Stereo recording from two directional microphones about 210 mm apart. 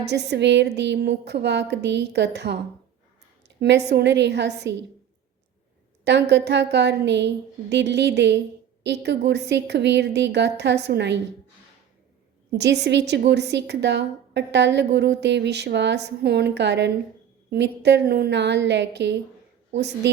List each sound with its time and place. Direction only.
0.0 s a woman's voice: 55° right (ahead or behind)
3.6 s a woman's voice: 55° right (ahead or behind)
6.1 s a woman's voice: 55° right (ahead or behind)
12.5 s a woman's voice: 55° right (ahead or behind)